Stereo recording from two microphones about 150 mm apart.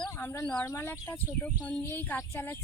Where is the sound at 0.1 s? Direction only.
15° left (ahead or behind).